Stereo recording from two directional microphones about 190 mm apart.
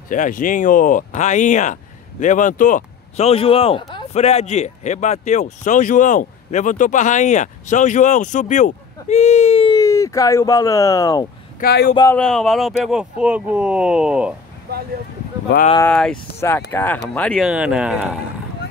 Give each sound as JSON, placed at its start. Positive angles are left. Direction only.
{"t": 0.1, "sound": "speech", "side_deg": 45}
{"t": 11.6, "sound": "speech", "side_deg": 55}
{"t": 11.9, "sound": "speech", "side_deg": 20}
{"t": 12.2, "sound": "speech", "side_deg": 5}
{"t": 14.7, "sound": "a sound", "side_deg": -55}
{"t": 15.8, "sound": "speech", "side_deg": 5}